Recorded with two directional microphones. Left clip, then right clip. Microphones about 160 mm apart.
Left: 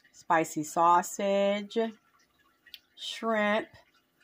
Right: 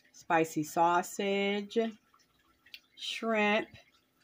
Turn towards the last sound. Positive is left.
turn(degrees=30)  # may be behind; listen again after turning